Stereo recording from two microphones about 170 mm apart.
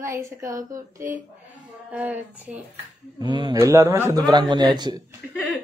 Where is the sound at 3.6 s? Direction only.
15° right (ahead or behind).